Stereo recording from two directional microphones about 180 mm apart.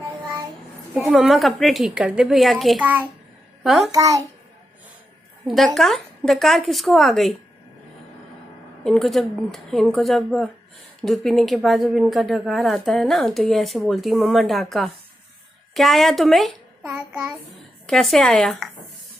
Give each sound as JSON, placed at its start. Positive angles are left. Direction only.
{"t": 0.9, "sound": "speech", "side_deg": 0}
{"t": 3.9, "sound": "a child's voice", "side_deg": -20}
{"t": 5.8, "sound": "speech", "side_deg": 0}
{"t": 8.8, "sound": "a child's voice", "side_deg": 0}